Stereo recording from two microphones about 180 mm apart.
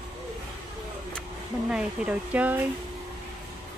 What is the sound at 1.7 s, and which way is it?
Speech, 5° right (ahead or behind).